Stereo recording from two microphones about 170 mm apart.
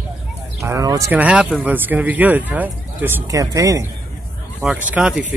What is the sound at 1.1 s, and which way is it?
Speech, 10° right (ahead or behind).